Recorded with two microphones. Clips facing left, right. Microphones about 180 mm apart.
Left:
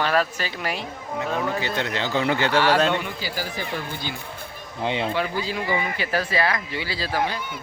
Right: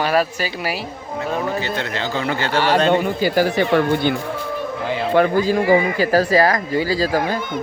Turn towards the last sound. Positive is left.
turn(degrees=-45)  # may be behind; listen again after turning